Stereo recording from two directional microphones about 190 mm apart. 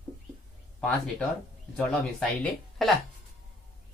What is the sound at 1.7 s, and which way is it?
Speech, centre (ahead or behind).